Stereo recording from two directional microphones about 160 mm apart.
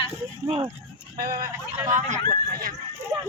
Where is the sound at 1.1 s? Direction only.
70° right (ahead or behind).